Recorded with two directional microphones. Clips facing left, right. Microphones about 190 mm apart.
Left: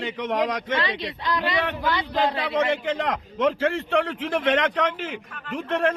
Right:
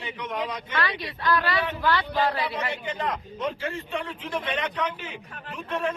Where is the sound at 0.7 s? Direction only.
25° left (ahead or behind).